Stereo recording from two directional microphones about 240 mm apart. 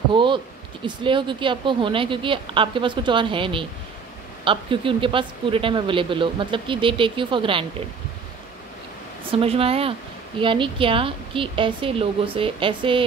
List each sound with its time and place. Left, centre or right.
0.1 s a sound: centre
0.8 s speech: centre
9.3 s speech: right